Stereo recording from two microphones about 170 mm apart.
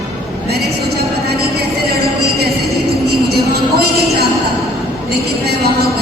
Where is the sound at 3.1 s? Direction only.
70° right (ahead or behind).